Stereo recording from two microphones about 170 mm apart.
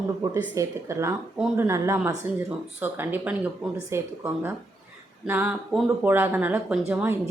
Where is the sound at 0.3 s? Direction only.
15° right (ahead or behind).